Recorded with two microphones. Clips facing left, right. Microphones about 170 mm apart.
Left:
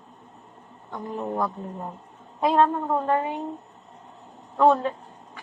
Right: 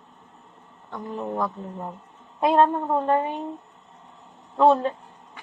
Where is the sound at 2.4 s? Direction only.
20° right (ahead or behind).